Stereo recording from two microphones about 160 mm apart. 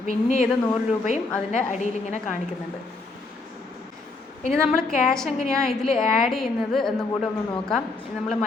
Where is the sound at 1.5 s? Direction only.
50° left (ahead or behind).